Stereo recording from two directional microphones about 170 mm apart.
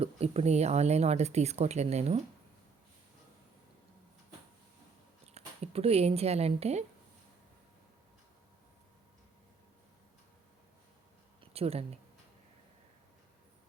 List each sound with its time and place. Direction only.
0.0 s speech: 35° right (ahead or behind)
5.3 s speech: 35° right (ahead or behind)
11.3 s a sound: 35° right (ahead or behind)